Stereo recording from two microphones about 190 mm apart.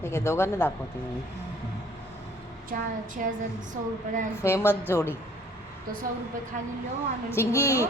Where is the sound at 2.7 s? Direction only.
45° right (ahead or behind).